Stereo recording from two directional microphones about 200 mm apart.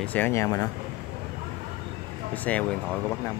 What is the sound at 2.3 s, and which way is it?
Speech, 5° left (ahead or behind).